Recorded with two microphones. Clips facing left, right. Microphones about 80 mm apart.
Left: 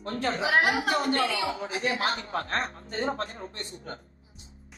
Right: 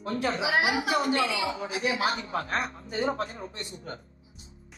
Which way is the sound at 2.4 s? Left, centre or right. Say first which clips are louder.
Even; centre.